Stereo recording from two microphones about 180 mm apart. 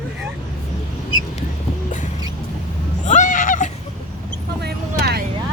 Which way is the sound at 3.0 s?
45° left (ahead or behind).